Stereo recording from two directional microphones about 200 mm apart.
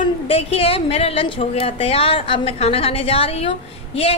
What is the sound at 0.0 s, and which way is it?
A woman's voice, 30° left (ahead or behind).